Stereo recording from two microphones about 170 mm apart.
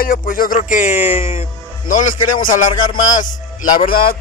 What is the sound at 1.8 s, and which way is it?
A man's voice, 50° left (ahead or behind).